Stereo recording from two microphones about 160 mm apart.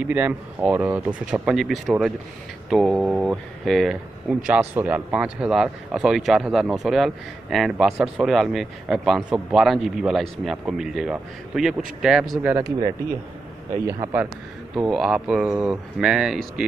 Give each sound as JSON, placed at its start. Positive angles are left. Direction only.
{"t": 0.0, "sound": "speech", "side_deg": -10}
{"t": 13.8, "sound": "a man's voice", "side_deg": -20}
{"t": 14.9, "sound": "speech", "side_deg": 0}